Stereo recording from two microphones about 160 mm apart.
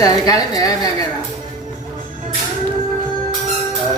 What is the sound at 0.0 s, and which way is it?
Speech, 20° left (ahead or behind).